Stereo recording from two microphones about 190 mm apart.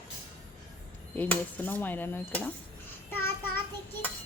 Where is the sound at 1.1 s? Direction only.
10° left (ahead or behind).